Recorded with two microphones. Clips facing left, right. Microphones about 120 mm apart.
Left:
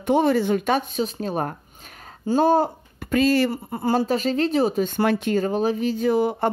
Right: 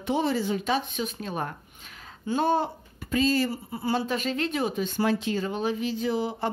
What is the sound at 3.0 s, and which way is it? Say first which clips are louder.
Speech: left 5 dB; 60° left (ahead or behind).